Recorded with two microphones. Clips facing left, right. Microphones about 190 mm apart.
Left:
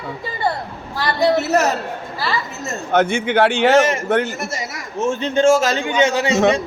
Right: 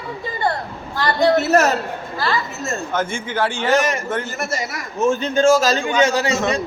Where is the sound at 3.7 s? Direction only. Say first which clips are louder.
Left 4 dB; 25° left (ahead or behind).